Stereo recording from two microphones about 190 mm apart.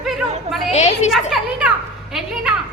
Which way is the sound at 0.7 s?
35° left (ahead or behind).